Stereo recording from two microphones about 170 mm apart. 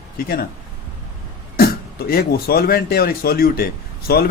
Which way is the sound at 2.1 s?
65° left (ahead or behind).